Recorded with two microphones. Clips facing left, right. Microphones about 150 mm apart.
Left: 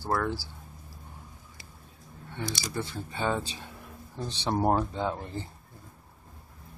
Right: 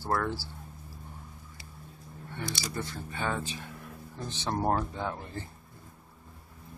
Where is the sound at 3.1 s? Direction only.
25° left (ahead or behind).